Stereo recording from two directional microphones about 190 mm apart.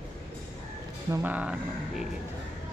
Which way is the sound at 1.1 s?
10° right (ahead or behind).